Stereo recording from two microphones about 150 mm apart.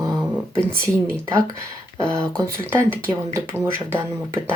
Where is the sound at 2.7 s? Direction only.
15° right (ahead or behind).